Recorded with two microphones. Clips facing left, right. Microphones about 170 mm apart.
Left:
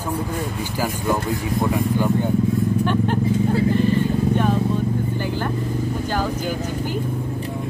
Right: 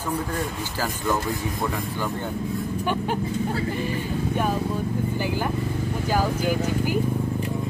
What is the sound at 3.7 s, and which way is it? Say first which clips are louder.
Vehicle: left 8 dB; 10° right (ahead or behind).